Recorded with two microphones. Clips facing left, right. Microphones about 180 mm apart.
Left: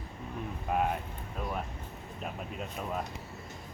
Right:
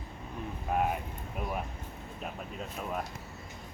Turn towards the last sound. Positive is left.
turn(degrees=0)  # may be behind; listen again after turning